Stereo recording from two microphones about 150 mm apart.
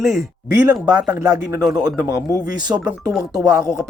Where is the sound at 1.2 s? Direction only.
20° right (ahead or behind).